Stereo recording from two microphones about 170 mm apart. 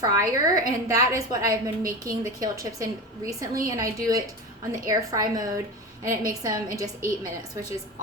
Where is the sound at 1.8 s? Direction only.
55° right (ahead or behind).